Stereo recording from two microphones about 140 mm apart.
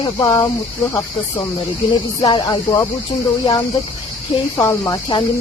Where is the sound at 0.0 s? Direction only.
25° left (ahead or behind).